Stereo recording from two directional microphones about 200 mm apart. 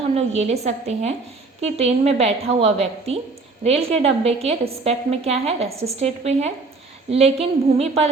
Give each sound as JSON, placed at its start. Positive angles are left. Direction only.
{"t": 0.1, "sound": "a woman's voice", "side_deg": -30}